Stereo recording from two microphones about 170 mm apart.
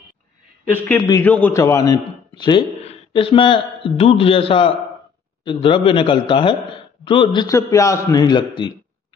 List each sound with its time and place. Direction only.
0.7 s a man's voice: 10° left (ahead or behind); by 7.5 s 30° left (ahead or behind)
7.5 s a man's voice: 20° left (ahead or behind)